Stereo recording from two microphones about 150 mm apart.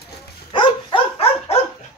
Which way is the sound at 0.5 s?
35° left (ahead or behind).